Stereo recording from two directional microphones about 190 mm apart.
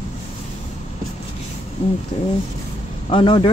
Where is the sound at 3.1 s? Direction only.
25° left (ahead or behind).